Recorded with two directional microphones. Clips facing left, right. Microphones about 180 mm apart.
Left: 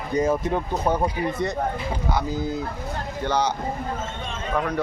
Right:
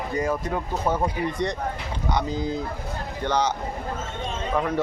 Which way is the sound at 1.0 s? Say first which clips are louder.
Left 1 dB; 5° left (ahead or behind).